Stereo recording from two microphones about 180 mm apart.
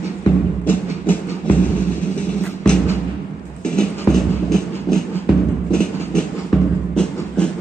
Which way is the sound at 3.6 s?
5° left (ahead or behind).